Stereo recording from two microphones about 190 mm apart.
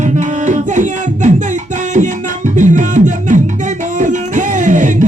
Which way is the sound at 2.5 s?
40° right (ahead or behind).